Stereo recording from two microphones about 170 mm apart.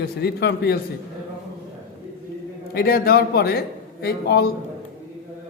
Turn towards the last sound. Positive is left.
turn(degrees=70)  # may be behind; listen again after turning